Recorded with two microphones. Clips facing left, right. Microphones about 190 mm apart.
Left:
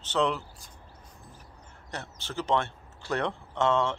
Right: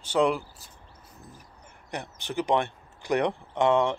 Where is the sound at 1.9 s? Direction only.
15° right (ahead or behind).